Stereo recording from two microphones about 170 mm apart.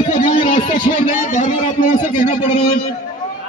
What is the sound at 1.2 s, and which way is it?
Speech, 45° left (ahead or behind).